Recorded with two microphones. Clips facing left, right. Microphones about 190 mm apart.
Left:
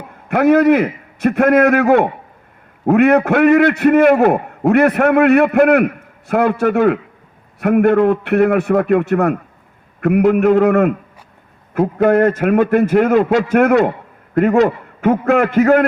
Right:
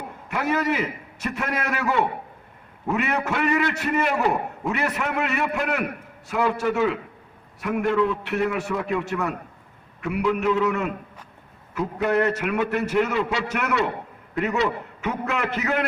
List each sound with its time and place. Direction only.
0.3 s a man's voice: 55° left (ahead or behind)